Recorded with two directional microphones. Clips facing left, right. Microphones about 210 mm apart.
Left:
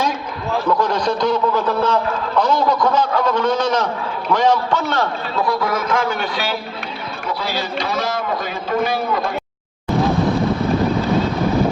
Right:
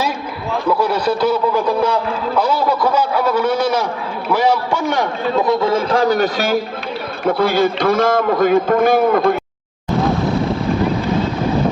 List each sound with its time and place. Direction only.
0.7 s a man's voice: 10° right (ahead or behind); by 9.4 s 55° right (ahead or behind)